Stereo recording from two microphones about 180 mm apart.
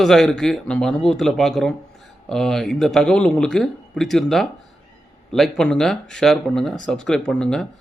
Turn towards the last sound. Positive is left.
turn(degrees=5)  # may be behind; listen again after turning